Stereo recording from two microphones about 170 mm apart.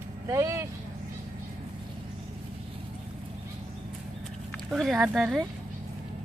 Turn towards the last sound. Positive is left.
turn(degrees=0)  # may be behind; listen again after turning